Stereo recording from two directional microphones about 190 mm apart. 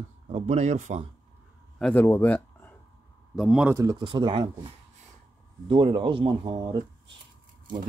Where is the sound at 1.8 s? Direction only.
5° left (ahead or behind).